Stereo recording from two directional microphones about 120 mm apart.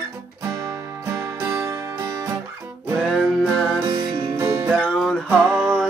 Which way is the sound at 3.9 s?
40° right (ahead or behind).